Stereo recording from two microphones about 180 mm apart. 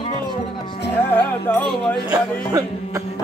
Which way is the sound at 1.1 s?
10° left (ahead or behind).